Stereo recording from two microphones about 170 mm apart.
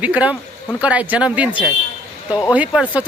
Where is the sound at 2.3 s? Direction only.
25° left (ahead or behind).